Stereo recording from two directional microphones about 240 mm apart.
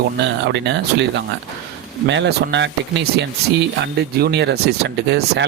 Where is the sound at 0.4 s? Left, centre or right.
Right.